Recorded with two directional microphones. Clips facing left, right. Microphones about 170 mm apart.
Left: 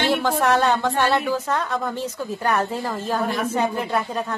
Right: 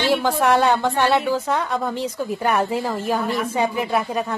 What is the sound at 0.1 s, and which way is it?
A woman's voice, 10° right (ahead or behind).